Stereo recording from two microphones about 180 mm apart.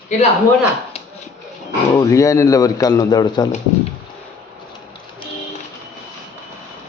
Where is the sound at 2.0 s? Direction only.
20° left (ahead or behind).